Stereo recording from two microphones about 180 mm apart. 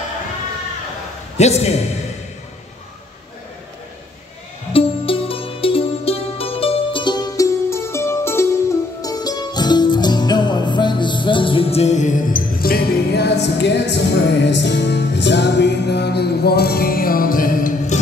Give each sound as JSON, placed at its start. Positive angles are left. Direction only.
{"t": 1.4, "sound": "a man's voice", "side_deg": 35}
{"t": 4.7, "sound": "music", "side_deg": 30}